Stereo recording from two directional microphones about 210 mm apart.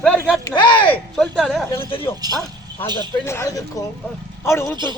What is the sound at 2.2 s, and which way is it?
Speech, 20° right (ahead or behind).